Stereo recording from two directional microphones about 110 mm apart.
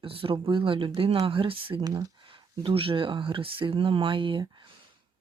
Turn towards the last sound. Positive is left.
turn(degrees=-50)  # may be behind; listen again after turning